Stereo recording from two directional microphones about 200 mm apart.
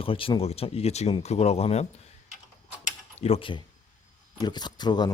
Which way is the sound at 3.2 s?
30° left (ahead or behind).